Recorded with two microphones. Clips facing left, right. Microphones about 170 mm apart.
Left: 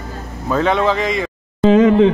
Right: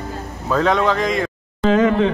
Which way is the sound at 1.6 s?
20° left (ahead or behind).